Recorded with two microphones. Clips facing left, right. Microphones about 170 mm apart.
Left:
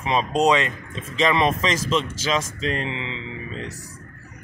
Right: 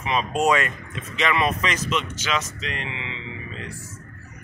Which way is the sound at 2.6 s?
35° left (ahead or behind).